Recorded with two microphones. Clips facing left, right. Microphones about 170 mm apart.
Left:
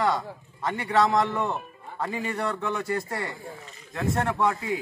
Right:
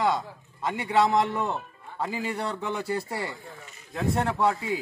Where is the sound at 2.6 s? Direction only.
30° right (ahead or behind).